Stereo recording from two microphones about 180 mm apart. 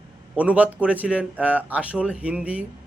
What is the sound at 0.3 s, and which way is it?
Speech, 10° right (ahead or behind).